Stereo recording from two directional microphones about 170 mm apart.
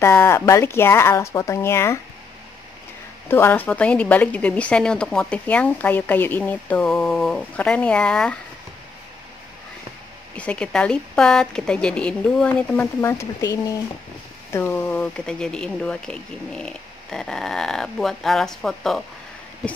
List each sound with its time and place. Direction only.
0.0 s a woman's voice: 15° left (ahead or behind)
3.3 s a woman's voice: 15° left (ahead or behind)
10.3 s speech: 5° left (ahead or behind)